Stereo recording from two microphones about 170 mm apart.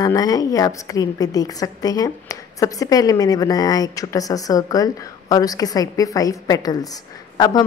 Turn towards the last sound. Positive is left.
turn(degrees=20)  # may be behind; listen again after turning